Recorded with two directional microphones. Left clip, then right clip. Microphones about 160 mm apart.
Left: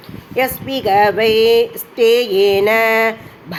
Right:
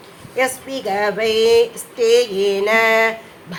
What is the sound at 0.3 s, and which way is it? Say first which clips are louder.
Female singing: left 2 dB; 25° left (ahead or behind).